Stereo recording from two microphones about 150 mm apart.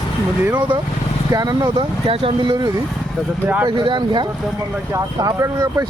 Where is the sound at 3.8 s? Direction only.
30° right (ahead or behind).